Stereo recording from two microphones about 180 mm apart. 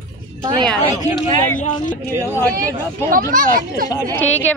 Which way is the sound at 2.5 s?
50° right (ahead or behind).